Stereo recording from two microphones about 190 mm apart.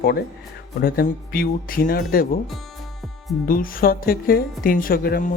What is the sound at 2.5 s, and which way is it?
Music, centre (ahead or behind).